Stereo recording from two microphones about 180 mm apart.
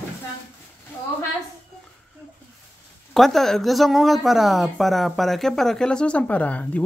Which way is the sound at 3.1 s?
Centre (ahead or behind).